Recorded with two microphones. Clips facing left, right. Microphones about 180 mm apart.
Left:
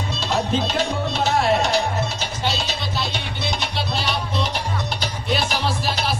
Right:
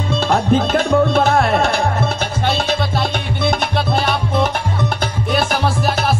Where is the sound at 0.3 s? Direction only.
55° right (ahead or behind).